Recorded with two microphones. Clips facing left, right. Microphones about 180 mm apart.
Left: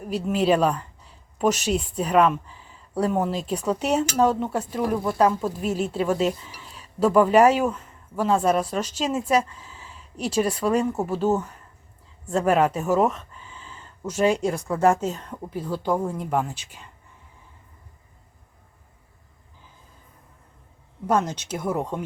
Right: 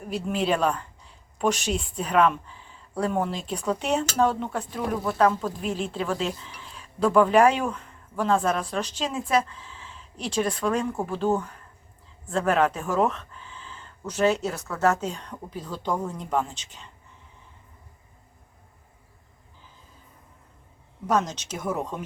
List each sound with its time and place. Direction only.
0.3 s a woman's voice: 5° left (ahead or behind)
3.2 s speech: 40° left (ahead or behind)
3.5 s speech: 10° left (ahead or behind)
21.1 s speech: 10° left (ahead or behind)